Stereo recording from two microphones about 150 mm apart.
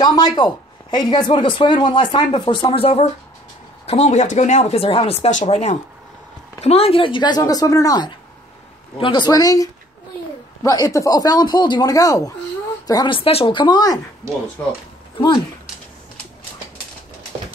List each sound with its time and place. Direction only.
0.0 s speech: 30° left (ahead or behind)
14.2 s speech: 20° right (ahead or behind)
14.6 s speech: 10° left (ahead or behind)
15.1 s speech: 35° left (ahead or behind)